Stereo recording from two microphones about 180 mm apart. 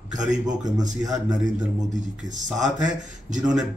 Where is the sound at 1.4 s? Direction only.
45° right (ahead or behind).